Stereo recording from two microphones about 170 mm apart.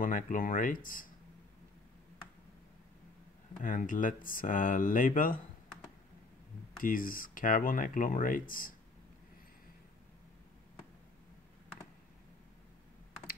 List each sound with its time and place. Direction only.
0.0 s speech: 50° left (ahead or behind)
3.6 s speech: 50° left (ahead or behind)
6.8 s speech: 55° left (ahead or behind)